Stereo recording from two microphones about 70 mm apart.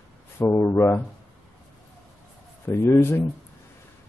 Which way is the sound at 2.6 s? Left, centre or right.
Left.